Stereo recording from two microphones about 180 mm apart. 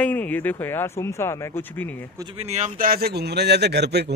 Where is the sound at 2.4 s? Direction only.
40° right (ahead or behind); by 4.1 s 65° right (ahead or behind).